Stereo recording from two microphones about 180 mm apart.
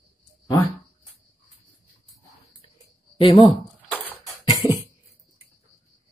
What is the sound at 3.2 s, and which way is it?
Speech, 30° left (ahead or behind).